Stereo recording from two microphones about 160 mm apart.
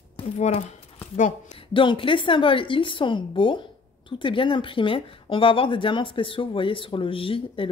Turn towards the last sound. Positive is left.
turn(degrees=35)  # may be behind; listen again after turning